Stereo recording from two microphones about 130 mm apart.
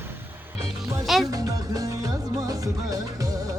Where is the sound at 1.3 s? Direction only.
30° right (ahead or behind).